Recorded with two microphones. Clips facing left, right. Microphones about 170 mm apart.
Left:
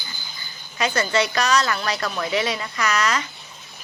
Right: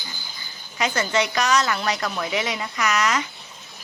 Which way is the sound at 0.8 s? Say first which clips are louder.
Left 1 dB; 15° right (ahead or behind).